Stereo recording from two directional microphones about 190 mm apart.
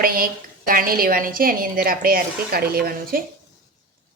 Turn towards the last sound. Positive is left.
turn(degrees=-55)  # may be behind; listen again after turning